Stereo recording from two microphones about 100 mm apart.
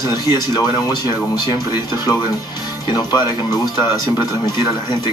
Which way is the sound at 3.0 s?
40° left (ahead or behind).